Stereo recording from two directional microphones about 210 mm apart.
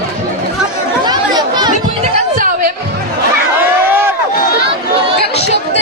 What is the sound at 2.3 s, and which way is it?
Music, 40° right (ahead or behind).